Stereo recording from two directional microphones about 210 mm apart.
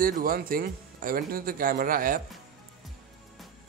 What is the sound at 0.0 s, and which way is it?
Speech, 40° right (ahead or behind).